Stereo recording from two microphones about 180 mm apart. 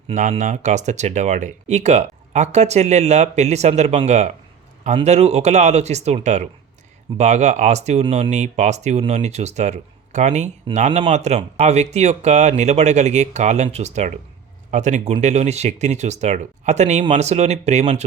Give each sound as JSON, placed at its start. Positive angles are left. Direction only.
{"t": 0.1, "sound": "speech", "side_deg": -45}